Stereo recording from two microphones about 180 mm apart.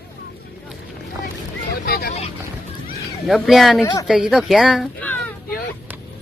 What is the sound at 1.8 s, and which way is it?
Vehicle, 55° left (ahead or behind).